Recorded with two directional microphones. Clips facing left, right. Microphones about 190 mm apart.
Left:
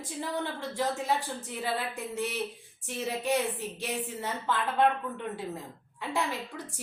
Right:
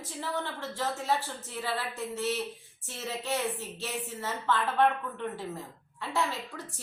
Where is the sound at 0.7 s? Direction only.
15° left (ahead or behind).